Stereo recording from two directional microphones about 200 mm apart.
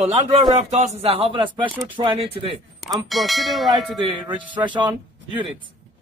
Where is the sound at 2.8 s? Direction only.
Centre (ahead or behind).